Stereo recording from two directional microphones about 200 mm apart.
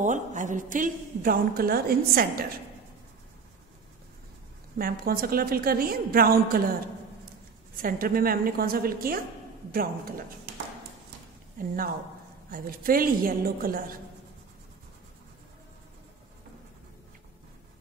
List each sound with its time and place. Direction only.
0.0 s a woman's voice: 40° right (ahead or behind)
5.0 s a woman's voice: 45° right (ahead or behind)
7.7 s a woman's voice: 45° right (ahead or behind)
11.5 s a woman's voice: 45° right (ahead or behind)